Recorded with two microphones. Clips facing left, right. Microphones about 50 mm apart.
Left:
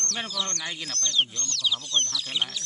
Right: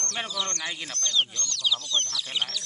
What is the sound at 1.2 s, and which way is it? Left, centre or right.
Speech, centre.